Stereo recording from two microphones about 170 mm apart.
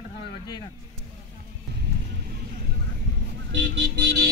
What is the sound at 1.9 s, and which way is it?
Vehicle, 85° right.